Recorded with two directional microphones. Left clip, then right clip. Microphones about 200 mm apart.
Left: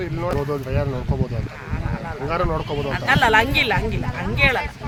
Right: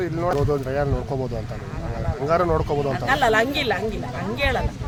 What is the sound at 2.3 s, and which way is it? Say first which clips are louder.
Speech: right 3 dB; 40° right (ahead or behind).